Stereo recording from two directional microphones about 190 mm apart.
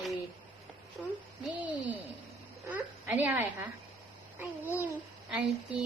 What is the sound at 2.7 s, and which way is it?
A woman's voice, 10° right (ahead or behind).